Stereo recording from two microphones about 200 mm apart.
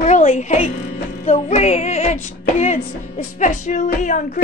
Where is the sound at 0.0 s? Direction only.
35° left (ahead or behind).